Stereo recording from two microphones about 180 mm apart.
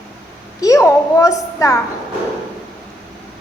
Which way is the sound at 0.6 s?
20° left (ahead or behind).